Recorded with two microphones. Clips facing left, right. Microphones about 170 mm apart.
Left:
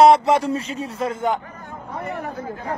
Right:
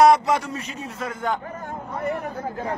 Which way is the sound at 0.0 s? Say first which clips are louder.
Left 3 dB; 30° left (ahead or behind).